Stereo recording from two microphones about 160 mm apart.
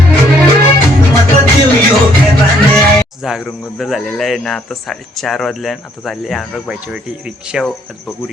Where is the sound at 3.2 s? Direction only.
5° right (ahead or behind).